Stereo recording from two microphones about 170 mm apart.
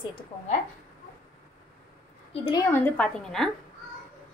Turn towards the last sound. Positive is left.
turn(degrees=5)  # may be behind; listen again after turning